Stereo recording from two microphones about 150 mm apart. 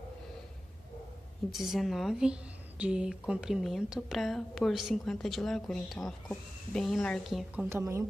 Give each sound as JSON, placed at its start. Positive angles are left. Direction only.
{"t": 1.5, "sound": "a woman's voice", "side_deg": 0}
{"t": 7.7, "sound": "speech", "side_deg": -20}